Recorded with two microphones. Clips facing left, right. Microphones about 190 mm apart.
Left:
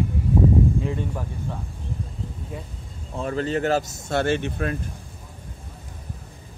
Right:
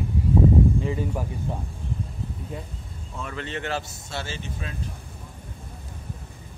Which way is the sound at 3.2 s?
40° left (ahead or behind).